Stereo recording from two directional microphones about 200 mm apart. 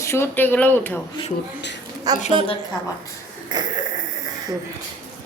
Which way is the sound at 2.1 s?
20° right (ahead or behind).